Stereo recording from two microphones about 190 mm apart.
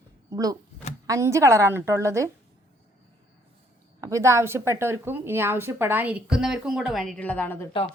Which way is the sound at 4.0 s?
15° right (ahead or behind).